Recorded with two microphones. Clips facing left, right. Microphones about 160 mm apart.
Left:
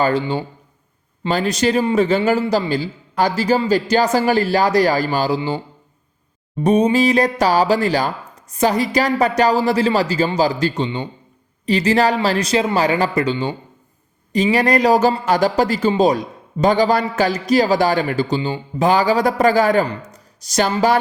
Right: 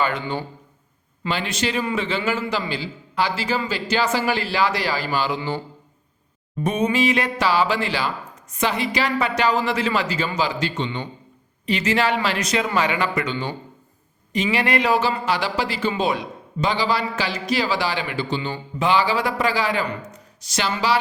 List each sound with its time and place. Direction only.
0.0 s speech: 30° left (ahead or behind)
1.3 s speech: 40° left (ahead or behind)
6.6 s speech: 35° left (ahead or behind)
10.8 s a man's voice: 25° left (ahead or behind)
14.3 s speech: 40° left (ahead or behind)